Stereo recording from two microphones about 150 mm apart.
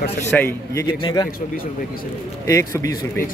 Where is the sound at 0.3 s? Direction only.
5° left (ahead or behind).